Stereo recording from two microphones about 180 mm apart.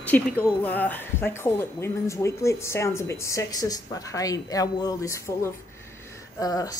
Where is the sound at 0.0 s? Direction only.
10° left (ahead or behind).